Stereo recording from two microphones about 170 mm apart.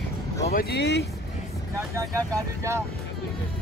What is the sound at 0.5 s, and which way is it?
Speech, 75° left (ahead or behind).